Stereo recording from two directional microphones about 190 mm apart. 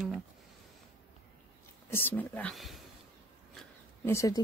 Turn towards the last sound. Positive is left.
turn(degrees=15)  # may be behind; listen again after turning